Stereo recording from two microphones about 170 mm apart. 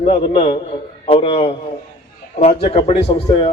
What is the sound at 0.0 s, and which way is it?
A man's voice, 35° left (ahead or behind).